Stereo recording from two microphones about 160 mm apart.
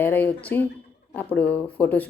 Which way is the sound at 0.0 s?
10° left (ahead or behind).